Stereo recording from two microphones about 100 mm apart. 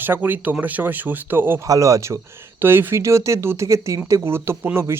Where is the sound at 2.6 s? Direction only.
20° right (ahead or behind).